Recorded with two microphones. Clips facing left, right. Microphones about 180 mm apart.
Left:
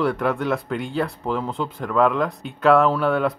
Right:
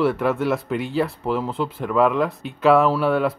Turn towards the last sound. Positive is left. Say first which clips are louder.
# right 1 dB
turn(degrees=0)  # may be behind; listen again after turning